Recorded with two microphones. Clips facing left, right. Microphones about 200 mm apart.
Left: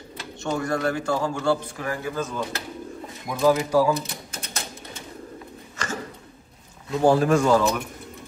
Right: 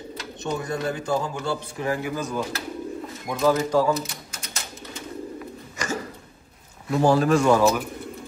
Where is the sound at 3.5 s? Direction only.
10° left (ahead or behind).